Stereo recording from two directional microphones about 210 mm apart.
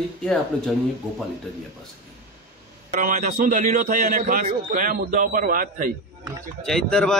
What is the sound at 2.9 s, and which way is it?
A man's voice, 40° right (ahead or behind).